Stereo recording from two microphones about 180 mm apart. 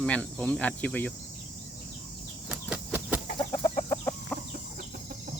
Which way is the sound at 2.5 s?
5° right (ahead or behind).